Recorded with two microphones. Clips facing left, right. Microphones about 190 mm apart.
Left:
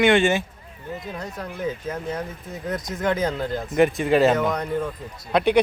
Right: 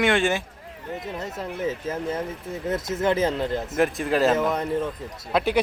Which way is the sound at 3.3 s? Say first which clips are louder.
Left 2 dB; centre (ahead or behind).